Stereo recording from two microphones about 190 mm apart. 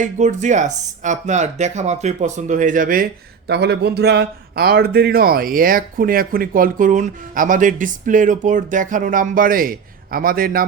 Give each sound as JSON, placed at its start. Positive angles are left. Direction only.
{"t": 0.0, "sound": "speech", "side_deg": -40}